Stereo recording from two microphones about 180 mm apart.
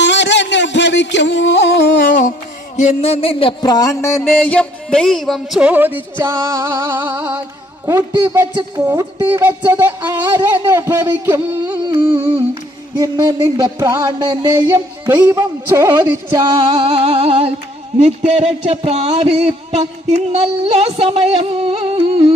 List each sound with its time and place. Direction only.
0.0 s music: 80° left
2.7 s music: 40° left (ahead or behind); by 11.8 s 10° right (ahead or behind)
11.9 s music: 25° right (ahead or behind)
16.3 s music: 25° right (ahead or behind)